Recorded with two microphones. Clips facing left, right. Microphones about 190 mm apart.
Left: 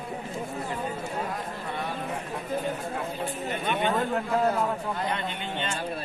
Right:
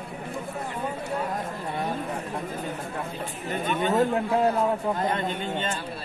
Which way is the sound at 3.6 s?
45° right (ahead or behind).